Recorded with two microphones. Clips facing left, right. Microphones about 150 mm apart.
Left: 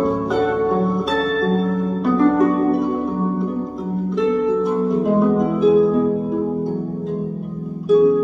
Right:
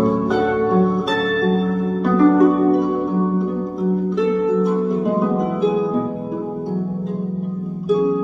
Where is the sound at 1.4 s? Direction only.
45° left (ahead or behind).